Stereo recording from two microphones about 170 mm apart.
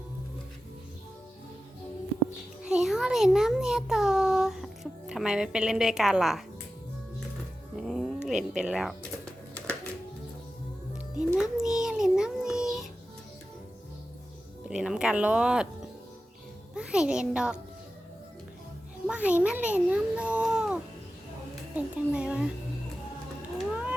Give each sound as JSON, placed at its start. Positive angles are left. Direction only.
{"t": 2.6, "sound": "a child's voice", "side_deg": -5}
{"t": 7.8, "sound": "cat", "side_deg": 0}
{"t": 11.5, "sound": "child singing", "side_deg": -5}
{"t": 14.6, "sound": "a child's voice", "side_deg": -5}
{"t": 19.0, "sound": "a child's voice", "side_deg": -10}
{"t": 23.6, "sound": "a sound", "side_deg": -5}